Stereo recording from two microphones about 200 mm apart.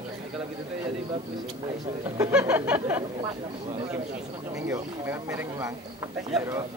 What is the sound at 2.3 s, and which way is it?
Speech, 5° right (ahead or behind).